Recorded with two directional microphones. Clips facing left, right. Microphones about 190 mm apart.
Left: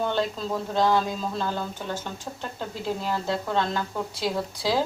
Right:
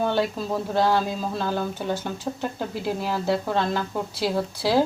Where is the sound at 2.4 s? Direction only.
10° right (ahead or behind).